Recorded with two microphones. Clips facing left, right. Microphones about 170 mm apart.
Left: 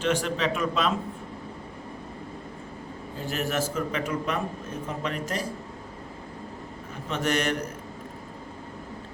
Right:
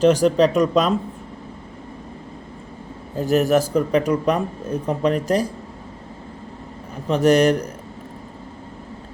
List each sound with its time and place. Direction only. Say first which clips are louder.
0.0 s a man's voice: right 11 dB; 40° right (ahead or behind)
3.2 s a man's voice: right 12 dB; 40° right (ahead or behind)
7.1 s a man's voice: right 11 dB; 35° right (ahead or behind)